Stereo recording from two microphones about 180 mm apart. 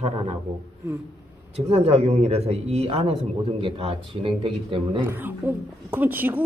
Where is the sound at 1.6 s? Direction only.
35° right (ahead or behind).